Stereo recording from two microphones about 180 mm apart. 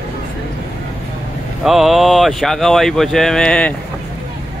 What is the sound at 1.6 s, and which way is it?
Speech, centre (ahead or behind).